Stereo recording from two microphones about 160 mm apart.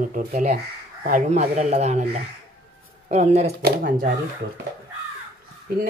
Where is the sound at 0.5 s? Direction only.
65° right (ahead or behind).